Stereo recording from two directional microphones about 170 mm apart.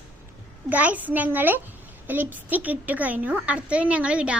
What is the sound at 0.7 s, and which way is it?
A child's voice, 10° right (ahead or behind).